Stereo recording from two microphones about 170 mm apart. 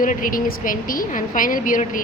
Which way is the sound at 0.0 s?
55° left (ahead or behind).